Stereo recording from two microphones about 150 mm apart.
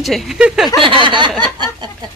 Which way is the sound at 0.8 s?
35° right (ahead or behind).